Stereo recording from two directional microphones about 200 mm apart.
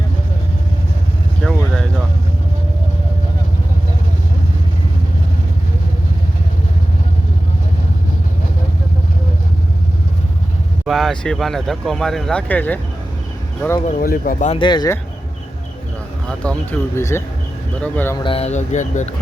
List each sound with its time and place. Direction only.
1.4 s vehicle: 5° left (ahead or behind)
10.8 s speech: centre (ahead or behind)
13.8 s speech: 45° left (ahead or behind)
14.6 s speech: 20° left (ahead or behind)
16.4 s speech: 5° left (ahead or behind)
18.2 s speech: 25° left (ahead or behind)